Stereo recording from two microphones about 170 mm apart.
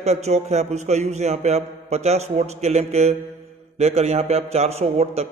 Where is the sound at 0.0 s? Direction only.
40° right (ahead or behind).